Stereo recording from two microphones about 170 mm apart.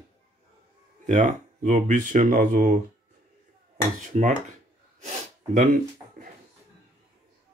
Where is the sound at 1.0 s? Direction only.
50° right (ahead or behind).